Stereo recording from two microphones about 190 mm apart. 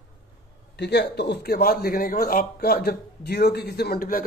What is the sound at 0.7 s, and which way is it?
A man's voice, 60° left (ahead or behind).